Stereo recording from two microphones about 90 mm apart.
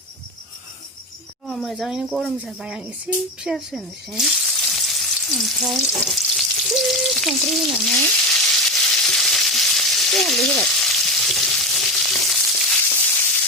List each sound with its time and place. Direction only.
1.5 s speech: centre (ahead or behind)
3.4 s speech: centre (ahead or behind)
4.6 s frying: centre (ahead or behind)